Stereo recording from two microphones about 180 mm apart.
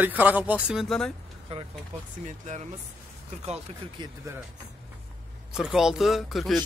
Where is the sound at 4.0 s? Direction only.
25° right (ahead or behind).